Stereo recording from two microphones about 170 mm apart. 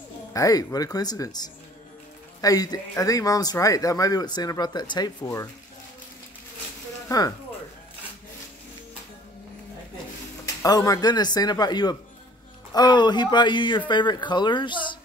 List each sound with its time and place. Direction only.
0.3 s speech: 20° left (ahead or behind)
7.1 s speech: 20° left (ahead or behind)
10.4 s speech: 20° left (ahead or behind)